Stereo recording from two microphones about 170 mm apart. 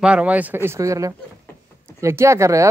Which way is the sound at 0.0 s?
5° right (ahead or behind).